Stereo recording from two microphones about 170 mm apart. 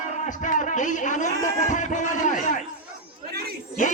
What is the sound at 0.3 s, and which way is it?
A man's voice, 45° left (ahead or behind).